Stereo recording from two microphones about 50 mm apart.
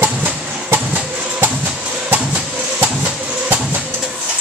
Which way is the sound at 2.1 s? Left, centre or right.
Right.